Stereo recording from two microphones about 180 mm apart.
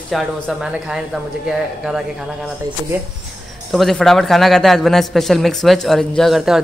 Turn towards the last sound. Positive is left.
turn(degrees=0)  # may be behind; listen again after turning